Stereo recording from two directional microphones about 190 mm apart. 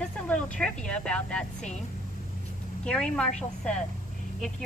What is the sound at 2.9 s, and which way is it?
Speech, 5° left (ahead or behind).